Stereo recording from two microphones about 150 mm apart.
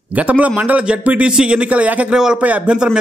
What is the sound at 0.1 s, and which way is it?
A man's voice, 10° right (ahead or behind).